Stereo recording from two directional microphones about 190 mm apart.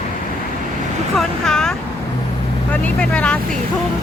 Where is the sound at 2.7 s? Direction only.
5° left (ahead or behind).